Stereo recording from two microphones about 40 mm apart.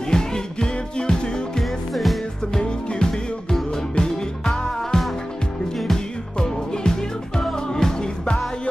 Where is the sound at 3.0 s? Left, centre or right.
Centre.